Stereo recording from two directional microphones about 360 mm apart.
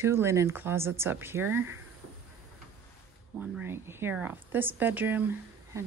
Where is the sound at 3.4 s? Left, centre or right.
Centre.